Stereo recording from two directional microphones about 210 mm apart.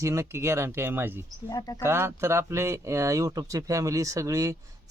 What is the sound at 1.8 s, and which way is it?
Speech, 10° right (ahead or behind).